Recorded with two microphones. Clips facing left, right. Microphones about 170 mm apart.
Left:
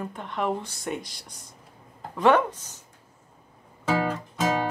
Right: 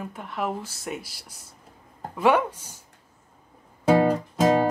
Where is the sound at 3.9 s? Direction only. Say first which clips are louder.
Right 7 dB; 40° right (ahead or behind).